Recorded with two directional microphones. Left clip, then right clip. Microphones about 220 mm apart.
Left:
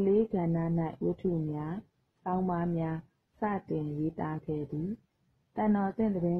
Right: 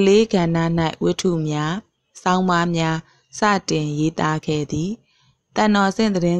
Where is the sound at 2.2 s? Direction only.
40° right (ahead or behind).